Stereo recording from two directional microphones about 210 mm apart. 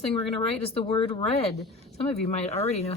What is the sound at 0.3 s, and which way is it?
Speech, 25° left (ahead or behind).